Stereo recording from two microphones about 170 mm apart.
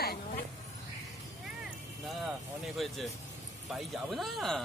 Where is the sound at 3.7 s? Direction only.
Centre (ahead or behind).